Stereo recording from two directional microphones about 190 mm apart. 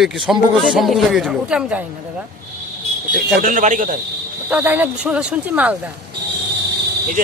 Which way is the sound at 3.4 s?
45° right (ahead or behind).